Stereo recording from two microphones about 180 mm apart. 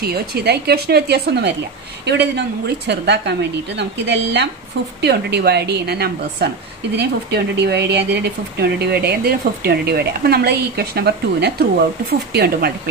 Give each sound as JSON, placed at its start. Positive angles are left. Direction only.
{"t": 0.0, "sound": "a woman's voice", "side_deg": -60}